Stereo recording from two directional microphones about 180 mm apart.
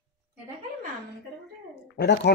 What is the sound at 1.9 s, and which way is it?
Speech, 70° left (ahead or behind).